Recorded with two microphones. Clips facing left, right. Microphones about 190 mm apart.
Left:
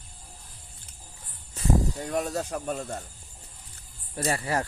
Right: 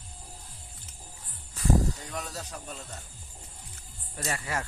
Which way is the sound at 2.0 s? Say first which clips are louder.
Left 10 dB; 50° left (ahead or behind).